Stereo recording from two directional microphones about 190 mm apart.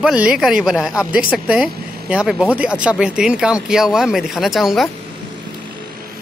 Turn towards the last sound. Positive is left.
turn(degrees=0)  # may be behind; listen again after turning